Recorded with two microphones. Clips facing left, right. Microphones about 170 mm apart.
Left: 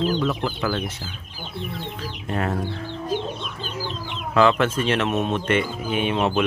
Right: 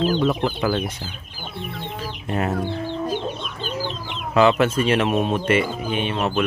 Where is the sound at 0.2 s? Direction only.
25° right (ahead or behind).